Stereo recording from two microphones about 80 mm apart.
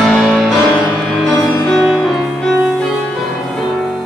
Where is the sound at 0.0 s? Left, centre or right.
Centre.